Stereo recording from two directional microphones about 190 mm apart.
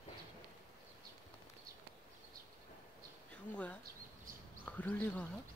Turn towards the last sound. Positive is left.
turn(degrees=10)  # may be behind; listen again after turning